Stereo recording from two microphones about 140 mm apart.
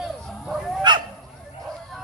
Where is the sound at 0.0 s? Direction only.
Centre (ahead or behind).